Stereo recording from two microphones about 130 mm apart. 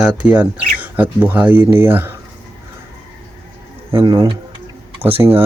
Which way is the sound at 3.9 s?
35° right (ahead or behind).